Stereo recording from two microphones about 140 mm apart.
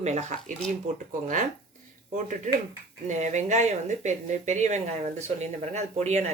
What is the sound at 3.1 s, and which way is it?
Speech, 60° right (ahead or behind).